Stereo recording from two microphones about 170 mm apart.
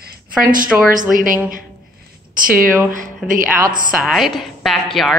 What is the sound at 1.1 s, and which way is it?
Speech, 55° right (ahead or behind).